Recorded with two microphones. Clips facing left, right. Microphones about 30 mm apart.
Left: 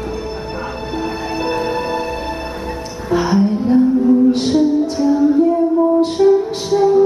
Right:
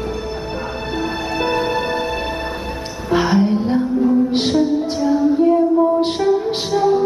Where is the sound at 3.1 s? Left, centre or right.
Right.